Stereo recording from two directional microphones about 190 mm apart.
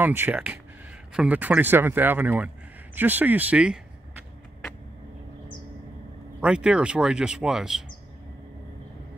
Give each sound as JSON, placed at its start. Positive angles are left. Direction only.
{"t": 0.0, "sound": "speech", "side_deg": -10}
{"t": 6.4, "sound": "speech", "side_deg": -5}